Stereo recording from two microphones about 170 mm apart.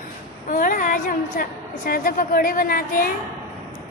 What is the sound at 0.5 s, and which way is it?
A woman's voice, 50° left (ahead or behind).